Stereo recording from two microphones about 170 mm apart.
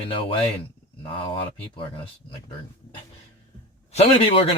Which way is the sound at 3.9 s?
35° left (ahead or behind).